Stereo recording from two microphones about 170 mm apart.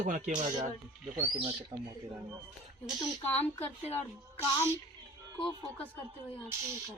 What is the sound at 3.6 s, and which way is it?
Speech, 40° left (ahead or behind).